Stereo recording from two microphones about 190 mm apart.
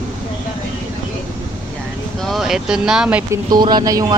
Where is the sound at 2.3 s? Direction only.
Centre (ahead or behind).